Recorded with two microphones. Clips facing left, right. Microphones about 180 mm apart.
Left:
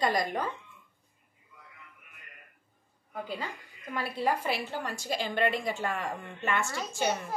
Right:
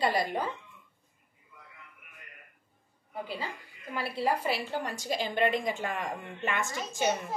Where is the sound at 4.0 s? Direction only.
35° right (ahead or behind).